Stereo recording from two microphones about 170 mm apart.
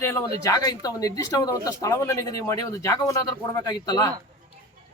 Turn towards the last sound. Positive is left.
turn(degrees=20)  # may be behind; listen again after turning